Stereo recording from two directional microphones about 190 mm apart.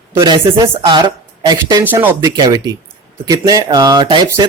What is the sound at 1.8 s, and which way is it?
Speech, 10° right (ahead or behind).